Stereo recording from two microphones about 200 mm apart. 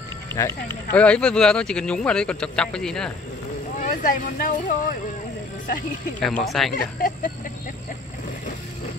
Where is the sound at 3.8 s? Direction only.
40° left (ahead or behind).